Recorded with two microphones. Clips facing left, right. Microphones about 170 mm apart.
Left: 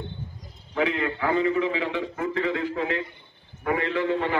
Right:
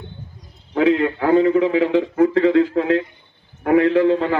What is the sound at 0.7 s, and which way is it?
Speech, 60° right (ahead or behind).